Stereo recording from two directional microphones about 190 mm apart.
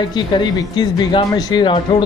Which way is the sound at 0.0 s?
25° left (ahead or behind).